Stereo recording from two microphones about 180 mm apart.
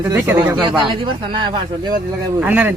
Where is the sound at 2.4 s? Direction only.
10° right (ahead or behind).